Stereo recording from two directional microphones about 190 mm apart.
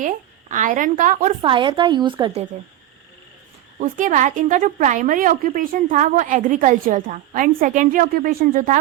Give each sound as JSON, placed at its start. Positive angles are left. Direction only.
{"t": 0.0, "sound": "a woman's voice", "side_deg": -45}
{"t": 1.4, "sound": "a woman's voice", "side_deg": -25}
{"t": 3.8, "sound": "a woman's voice", "side_deg": -45}